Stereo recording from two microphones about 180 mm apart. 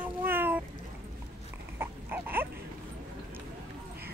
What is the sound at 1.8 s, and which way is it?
Dog, 10° right (ahead or behind).